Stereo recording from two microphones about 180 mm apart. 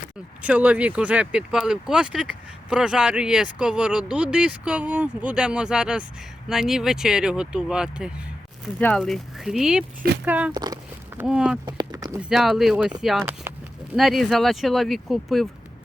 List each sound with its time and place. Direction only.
0.4 s speech: 10° right (ahead or behind)
10.5 s speech: 20° right (ahead or behind)
11.2 s speech: 5° right (ahead or behind)
11.6 s speech: 20° right (ahead or behind)
12.2 s speech: centre (ahead or behind)